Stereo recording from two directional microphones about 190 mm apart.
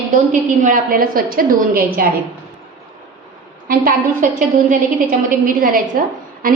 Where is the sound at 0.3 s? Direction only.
40° right (ahead or behind).